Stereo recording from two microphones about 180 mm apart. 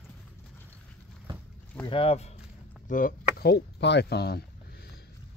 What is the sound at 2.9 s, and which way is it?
Speech, 50° left (ahead or behind).